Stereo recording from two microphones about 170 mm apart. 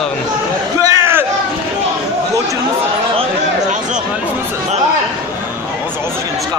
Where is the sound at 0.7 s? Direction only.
15° right (ahead or behind).